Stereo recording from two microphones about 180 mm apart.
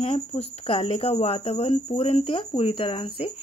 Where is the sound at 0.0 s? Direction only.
30° left (ahead or behind).